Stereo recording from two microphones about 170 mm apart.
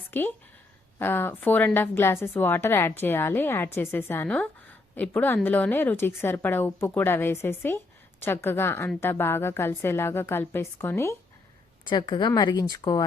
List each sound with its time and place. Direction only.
0.1 s a woman's voice: 10° left (ahead or behind)
11.9 s speech: 30° left (ahead or behind)